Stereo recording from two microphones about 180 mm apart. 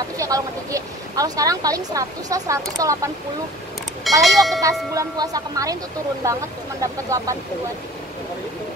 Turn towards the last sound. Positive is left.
turn(degrees=-15)  # may be behind; listen again after turning